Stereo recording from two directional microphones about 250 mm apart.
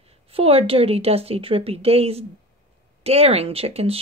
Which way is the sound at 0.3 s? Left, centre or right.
Right.